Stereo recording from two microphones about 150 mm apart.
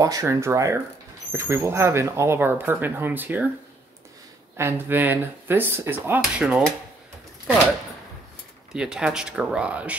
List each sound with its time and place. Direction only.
0.0 s speech: 20° right (ahead or behind)
4.6 s speech: 15° right (ahead or behind)
8.7 s speech: 5° right (ahead or behind)